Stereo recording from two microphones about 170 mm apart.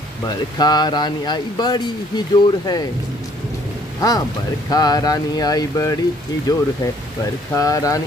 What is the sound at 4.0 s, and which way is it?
Speech, 20° left (ahead or behind).